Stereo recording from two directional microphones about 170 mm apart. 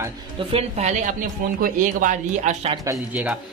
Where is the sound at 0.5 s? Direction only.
40° right (ahead or behind).